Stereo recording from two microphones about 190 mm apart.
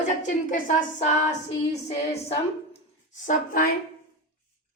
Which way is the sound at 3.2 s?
50° left (ahead or behind).